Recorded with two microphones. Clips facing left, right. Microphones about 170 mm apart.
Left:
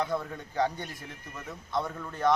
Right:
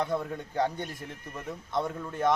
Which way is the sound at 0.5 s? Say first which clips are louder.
Even; 50° right (ahead or behind).